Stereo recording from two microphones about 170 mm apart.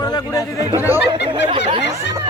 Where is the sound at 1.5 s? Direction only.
30° right (ahead or behind).